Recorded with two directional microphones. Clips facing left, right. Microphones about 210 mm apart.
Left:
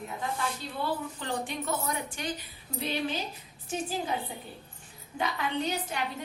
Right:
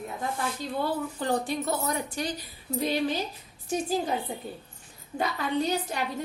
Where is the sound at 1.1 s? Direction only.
40° right (ahead or behind).